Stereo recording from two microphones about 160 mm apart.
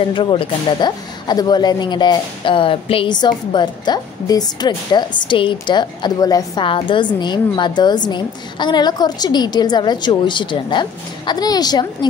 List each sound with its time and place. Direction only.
0.1 s speech: 30° left (ahead or behind)